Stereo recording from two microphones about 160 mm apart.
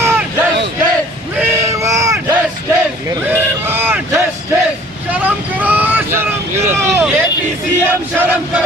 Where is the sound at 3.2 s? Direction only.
15° right (ahead or behind).